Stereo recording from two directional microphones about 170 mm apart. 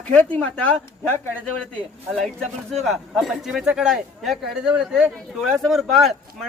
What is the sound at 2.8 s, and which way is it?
Speech, centre (ahead or behind).